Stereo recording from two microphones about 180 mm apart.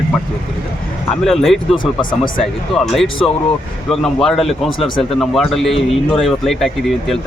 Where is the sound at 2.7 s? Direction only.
Centre (ahead or behind).